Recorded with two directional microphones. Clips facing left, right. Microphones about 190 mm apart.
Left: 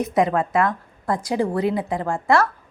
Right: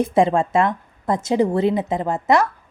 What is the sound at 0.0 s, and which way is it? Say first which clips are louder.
A woman's voice: right 3 dB; 25° right (ahead or behind).